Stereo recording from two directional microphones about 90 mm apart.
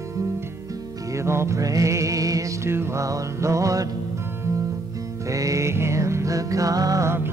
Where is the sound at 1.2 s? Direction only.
30° right (ahead or behind).